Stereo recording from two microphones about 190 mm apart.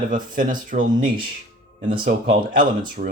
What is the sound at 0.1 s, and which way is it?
Speech, 45° right (ahead or behind).